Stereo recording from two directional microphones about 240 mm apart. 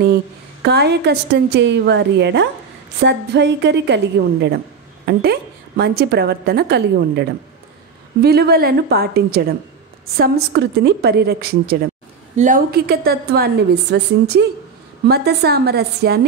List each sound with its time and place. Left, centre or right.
0.6 s a woman's voice: right